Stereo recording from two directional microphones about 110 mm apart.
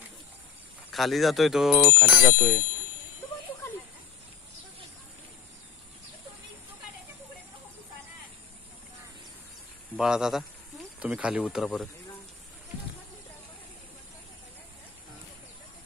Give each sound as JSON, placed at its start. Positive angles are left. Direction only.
{"t": 0.9, "sound": "speech", "side_deg": 0}
{"t": 1.9, "sound": "speech", "side_deg": -15}
{"t": 9.9, "sound": "speech", "side_deg": -5}